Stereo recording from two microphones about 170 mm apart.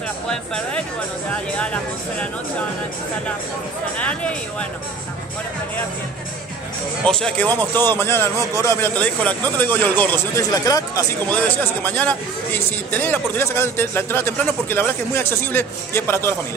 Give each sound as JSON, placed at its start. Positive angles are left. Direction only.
{"t": 1.3, "sound": "speech", "side_deg": 5}
{"t": 4.0, "sound": "speech", "side_deg": 5}
{"t": 7.1, "sound": "speech", "side_deg": 5}
{"t": 11.3, "sound": "speech", "side_deg": 10}